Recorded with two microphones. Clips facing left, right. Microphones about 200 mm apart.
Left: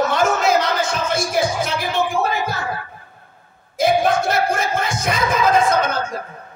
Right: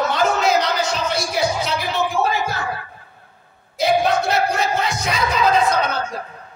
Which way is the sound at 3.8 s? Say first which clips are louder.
Left 1 dB; 50° left (ahead or behind).